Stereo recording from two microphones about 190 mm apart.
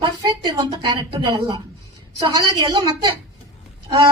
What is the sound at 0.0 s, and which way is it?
A woman's voice, 25° right (ahead or behind).